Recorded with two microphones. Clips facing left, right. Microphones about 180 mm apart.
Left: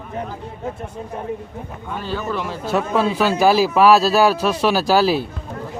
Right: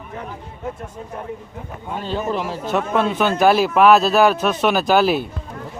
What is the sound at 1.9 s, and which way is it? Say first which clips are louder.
Speech: right 2 dB; 25° right (ahead or behind).